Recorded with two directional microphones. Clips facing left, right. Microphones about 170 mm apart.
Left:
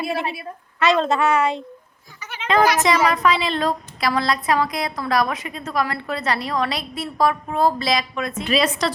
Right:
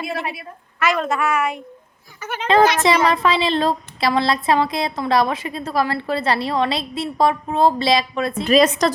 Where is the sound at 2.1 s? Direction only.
50° right (ahead or behind).